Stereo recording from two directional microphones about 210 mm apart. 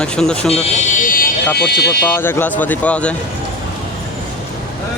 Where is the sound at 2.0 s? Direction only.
10° left (ahead or behind).